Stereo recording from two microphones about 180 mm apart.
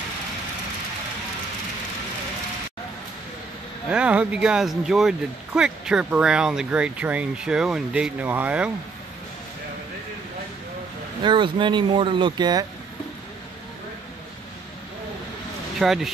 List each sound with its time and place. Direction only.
3.9 s speech: 5° right (ahead or behind)
11.2 s speech: 25° right (ahead or behind)
15.8 s speech: centre (ahead or behind)